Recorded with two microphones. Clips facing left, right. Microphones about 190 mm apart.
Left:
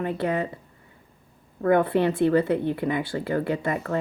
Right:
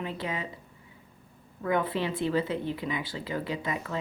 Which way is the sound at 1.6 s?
60° left (ahead or behind).